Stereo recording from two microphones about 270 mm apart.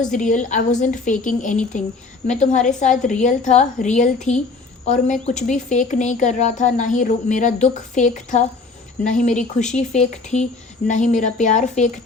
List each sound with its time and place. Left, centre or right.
0.0 s a woman's voice: left